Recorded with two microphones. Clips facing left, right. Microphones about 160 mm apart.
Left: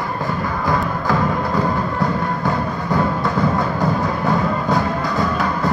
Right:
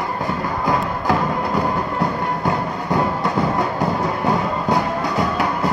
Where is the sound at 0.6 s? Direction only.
15° right (ahead or behind).